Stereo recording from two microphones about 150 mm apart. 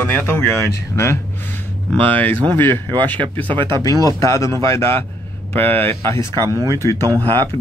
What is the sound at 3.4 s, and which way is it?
Speech, 35° right (ahead or behind).